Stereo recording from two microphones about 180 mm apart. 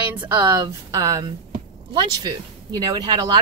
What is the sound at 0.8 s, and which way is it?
Speech, 20° right (ahead or behind).